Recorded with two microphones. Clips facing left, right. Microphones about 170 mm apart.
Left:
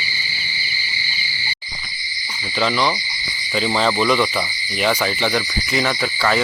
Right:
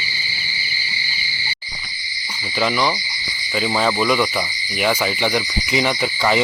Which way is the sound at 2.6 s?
10° right (ahead or behind).